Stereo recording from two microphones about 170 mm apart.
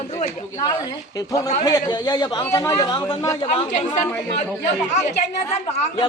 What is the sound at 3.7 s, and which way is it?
A woman's voice, 45° left (ahead or behind).